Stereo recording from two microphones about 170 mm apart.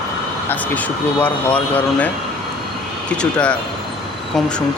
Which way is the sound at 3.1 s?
5° left (ahead or behind).